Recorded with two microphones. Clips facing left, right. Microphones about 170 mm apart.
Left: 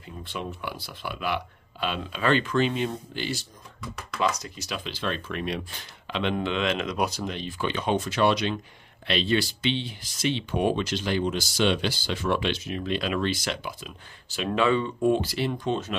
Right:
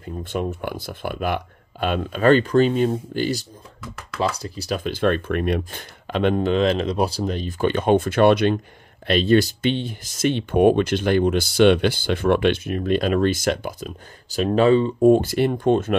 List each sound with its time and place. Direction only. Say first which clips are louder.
0.0 s speech: right 9 dB; 45° right (ahead or behind)